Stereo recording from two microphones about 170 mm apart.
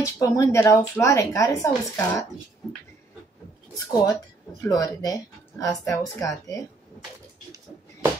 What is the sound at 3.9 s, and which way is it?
A woman's voice, 20° left (ahead or behind).